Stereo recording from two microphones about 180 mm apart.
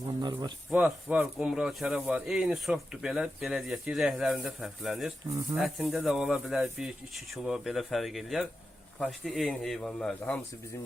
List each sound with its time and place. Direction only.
0.2 s speech: 25° right (ahead or behind)
0.7 s speech: 5° right (ahead or behind)